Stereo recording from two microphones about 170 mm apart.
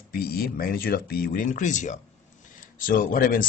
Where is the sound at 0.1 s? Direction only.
60° left (ahead or behind); by 2.0 s 45° left (ahead or behind).